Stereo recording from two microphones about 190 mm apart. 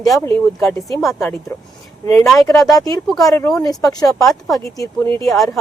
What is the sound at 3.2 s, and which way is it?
Speech, 15° left (ahead or behind).